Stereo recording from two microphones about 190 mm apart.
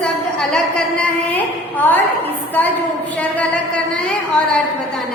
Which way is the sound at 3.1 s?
5° left (ahead or behind).